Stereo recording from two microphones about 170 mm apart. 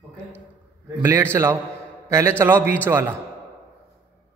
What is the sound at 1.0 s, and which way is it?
A man's voice, 15° right (ahead or behind).